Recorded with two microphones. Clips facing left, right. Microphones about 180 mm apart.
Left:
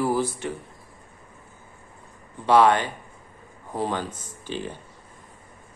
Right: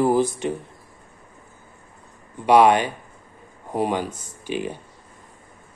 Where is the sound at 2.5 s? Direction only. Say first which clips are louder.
Right 3 dB; 15° right (ahead or behind).